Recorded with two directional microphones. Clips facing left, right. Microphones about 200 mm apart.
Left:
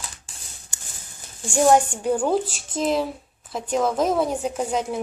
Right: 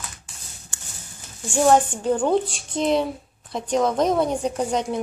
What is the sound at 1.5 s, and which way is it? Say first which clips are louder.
A woman's voice: even; 10° left (ahead or behind).